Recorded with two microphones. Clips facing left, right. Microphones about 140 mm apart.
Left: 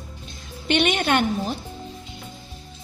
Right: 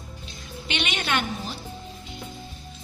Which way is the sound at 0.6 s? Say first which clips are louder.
Left 9 dB; 50° left (ahead or behind).